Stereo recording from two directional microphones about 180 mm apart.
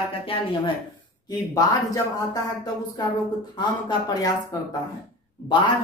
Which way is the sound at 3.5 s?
20° left (ahead or behind).